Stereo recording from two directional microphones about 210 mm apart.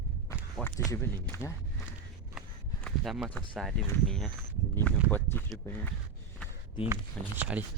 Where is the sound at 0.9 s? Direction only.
15° left (ahead or behind).